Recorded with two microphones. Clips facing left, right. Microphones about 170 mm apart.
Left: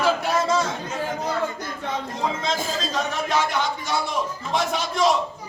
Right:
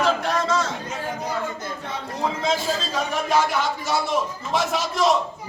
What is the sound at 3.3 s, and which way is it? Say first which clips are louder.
A man's voice: right 3 dB; 5° right (ahead or behind).